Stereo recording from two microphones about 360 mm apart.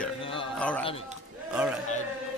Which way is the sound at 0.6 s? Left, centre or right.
Centre.